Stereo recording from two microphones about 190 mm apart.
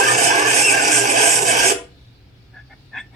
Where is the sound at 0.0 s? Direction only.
35° right (ahead or behind).